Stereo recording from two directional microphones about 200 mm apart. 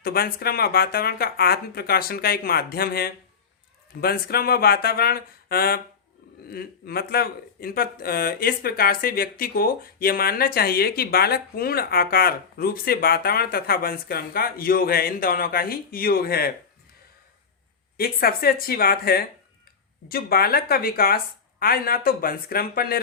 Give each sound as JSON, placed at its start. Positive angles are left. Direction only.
{"t": 0.0, "sound": "speech", "side_deg": 50}
{"t": 17.9, "sound": "speech", "side_deg": 50}